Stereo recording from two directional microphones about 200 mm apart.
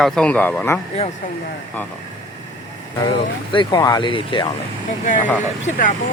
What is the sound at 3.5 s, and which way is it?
Speech, 20° left (ahead or behind).